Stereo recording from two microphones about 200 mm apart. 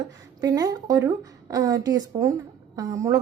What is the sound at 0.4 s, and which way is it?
A woman's voice, 20° right (ahead or behind).